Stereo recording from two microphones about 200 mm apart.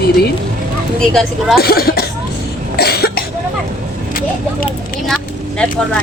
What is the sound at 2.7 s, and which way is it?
Cough, 50° left (ahead or behind).